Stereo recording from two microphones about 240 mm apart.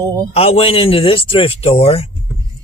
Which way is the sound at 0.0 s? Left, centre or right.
Centre.